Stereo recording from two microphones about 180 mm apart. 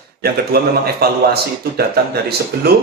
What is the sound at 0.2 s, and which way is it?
Speech, 60° right (ahead or behind).